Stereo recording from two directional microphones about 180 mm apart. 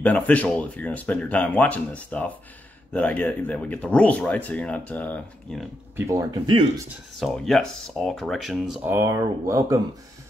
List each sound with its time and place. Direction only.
0.0 s speech: 10° left (ahead or behind)
5.9 s speech: 20° right (ahead or behind)
7.2 s speech: centre (ahead or behind)
8.9 s speech: 15° right (ahead or behind)